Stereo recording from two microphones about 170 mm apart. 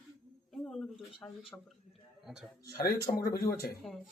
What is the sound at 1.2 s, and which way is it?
A man's voice, 5° left (ahead or behind).